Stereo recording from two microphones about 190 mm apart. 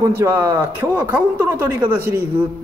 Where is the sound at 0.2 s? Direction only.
15° right (ahead or behind).